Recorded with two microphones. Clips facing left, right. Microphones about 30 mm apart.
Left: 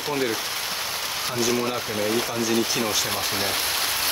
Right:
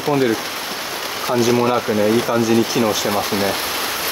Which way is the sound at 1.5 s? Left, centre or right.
Right.